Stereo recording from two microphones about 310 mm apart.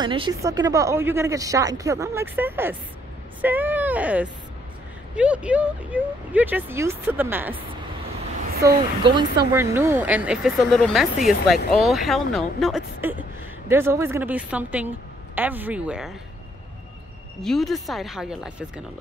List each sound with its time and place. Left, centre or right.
0.0 s speech: centre
8.7 s speech: centre
17.4 s speech: centre